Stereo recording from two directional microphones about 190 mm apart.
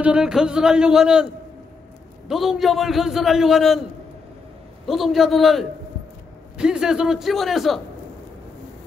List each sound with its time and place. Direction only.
0.0 s a man's voice: 5° right (ahead or behind)
4.8 s a man's voice: centre (ahead or behind)